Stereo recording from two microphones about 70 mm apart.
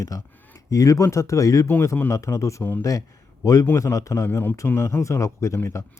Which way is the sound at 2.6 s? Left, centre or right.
Left.